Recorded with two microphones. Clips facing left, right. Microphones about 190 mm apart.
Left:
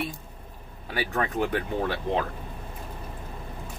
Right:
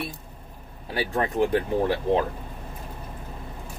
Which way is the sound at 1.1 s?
20° right (ahead or behind).